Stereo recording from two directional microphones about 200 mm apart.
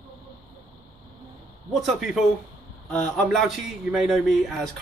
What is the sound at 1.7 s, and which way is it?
Speech, centre (ahead or behind).